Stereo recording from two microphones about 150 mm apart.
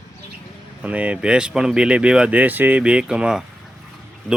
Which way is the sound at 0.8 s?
10° right (ahead or behind).